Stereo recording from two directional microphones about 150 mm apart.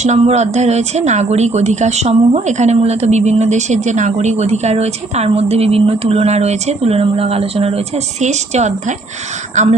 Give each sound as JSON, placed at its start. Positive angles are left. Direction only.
{"t": 0.0, "sound": "a woman's voice", "side_deg": -50}